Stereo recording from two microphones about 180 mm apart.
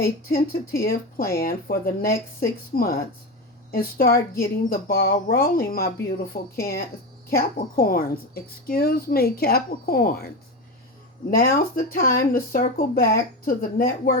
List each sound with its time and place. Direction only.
0.8 s speech: 55° left (ahead or behind)